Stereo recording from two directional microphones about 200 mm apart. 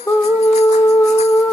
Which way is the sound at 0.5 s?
35° left (ahead or behind).